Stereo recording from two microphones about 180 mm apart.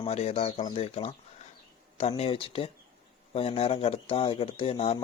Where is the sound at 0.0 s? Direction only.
35° left (ahead or behind).